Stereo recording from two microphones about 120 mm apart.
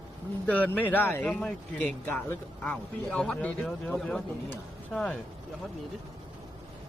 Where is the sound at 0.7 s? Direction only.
15° left (ahead or behind).